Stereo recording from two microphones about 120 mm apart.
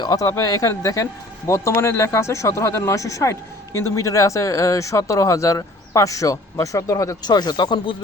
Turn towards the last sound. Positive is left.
turn(degrees=40)  # may be behind; listen again after turning